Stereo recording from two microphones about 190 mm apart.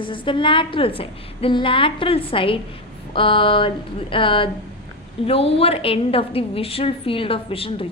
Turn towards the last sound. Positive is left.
turn(degrees=30)  # may be behind; listen again after turning